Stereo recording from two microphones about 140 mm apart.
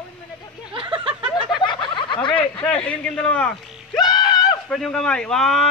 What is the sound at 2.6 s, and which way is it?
Speech, 10° left (ahead or behind).